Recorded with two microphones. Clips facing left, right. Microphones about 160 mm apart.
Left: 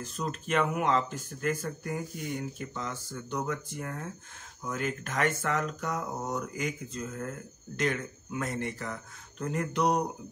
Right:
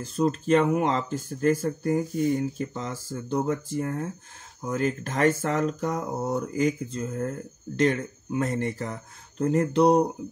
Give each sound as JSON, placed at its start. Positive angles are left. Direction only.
{"t": 0.0, "sound": "speech", "side_deg": -30}